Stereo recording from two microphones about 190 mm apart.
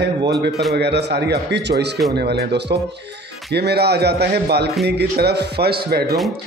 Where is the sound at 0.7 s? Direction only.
60° right (ahead or behind).